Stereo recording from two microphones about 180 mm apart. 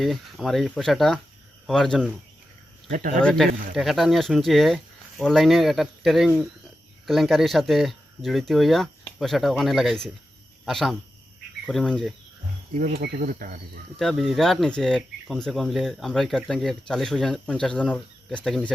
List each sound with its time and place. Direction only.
0.0 s speech: centre (ahead or behind)
3.2 s speech: 5° left (ahead or behind)
12.8 s cricket: 60° right (ahead or behind)
14.0 s speech: centre (ahead or behind)